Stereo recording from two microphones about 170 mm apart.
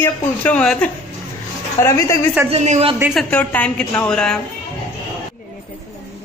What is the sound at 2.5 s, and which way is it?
Speech, 40° right (ahead or behind).